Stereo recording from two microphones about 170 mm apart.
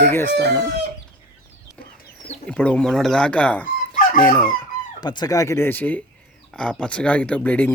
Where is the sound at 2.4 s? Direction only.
5° left (ahead or behind).